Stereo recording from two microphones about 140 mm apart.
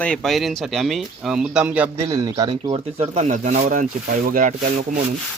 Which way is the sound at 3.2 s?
65° right (ahead or behind).